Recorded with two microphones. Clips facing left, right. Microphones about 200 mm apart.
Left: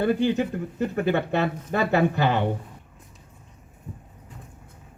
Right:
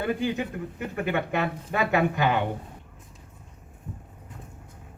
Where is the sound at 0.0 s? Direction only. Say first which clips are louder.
Left 5 dB; 35° left (ahead or behind).